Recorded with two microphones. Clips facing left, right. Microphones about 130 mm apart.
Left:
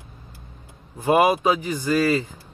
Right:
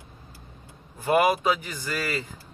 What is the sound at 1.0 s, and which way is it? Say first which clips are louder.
Speech: left 4 dB; 25° left (ahead or behind).